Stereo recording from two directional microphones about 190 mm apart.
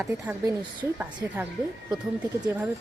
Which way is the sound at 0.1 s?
15° right (ahead or behind).